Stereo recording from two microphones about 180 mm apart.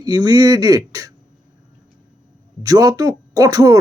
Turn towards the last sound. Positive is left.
turn(degrees=-20)  # may be behind; listen again after turning